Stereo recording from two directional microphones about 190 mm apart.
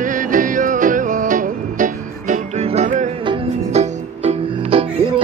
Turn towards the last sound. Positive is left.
turn(degrees=-30)  # may be behind; listen again after turning